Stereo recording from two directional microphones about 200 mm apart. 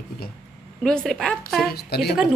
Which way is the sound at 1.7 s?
55° left (ahead or behind).